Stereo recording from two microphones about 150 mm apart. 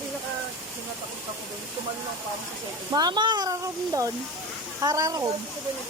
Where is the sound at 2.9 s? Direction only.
30° right (ahead or behind).